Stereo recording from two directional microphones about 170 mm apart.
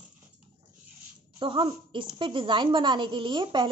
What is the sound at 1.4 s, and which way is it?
A woman's voice, 30° right (ahead or behind).